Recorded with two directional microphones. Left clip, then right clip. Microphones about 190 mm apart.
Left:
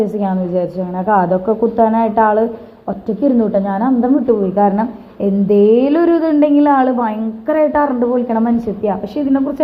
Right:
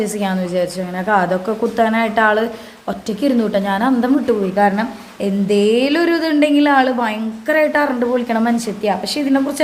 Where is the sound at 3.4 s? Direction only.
35° right (ahead or behind).